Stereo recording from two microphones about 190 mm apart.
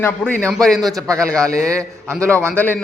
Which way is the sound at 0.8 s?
20° right (ahead or behind).